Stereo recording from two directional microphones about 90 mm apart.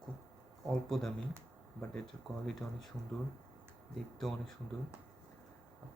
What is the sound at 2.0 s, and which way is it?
Speech, centre (ahead or behind).